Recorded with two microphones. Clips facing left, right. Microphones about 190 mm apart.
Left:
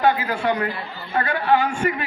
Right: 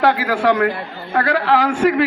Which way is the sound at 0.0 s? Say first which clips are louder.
Right 4 dB; 80° right.